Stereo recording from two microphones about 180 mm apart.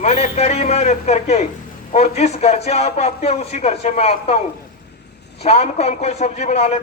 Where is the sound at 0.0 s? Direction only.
35° left (ahead or behind).